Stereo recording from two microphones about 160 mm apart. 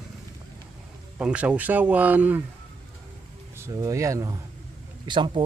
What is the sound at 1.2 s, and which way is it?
Speech, 10° right (ahead or behind).